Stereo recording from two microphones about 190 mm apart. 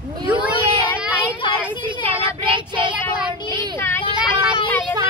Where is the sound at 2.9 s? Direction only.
5° right (ahead or behind).